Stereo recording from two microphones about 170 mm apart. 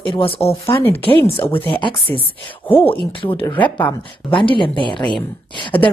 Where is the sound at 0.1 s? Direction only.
35° left (ahead or behind).